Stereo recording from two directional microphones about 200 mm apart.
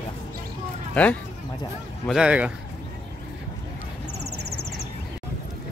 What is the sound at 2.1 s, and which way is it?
Speech, 5° right (ahead or behind).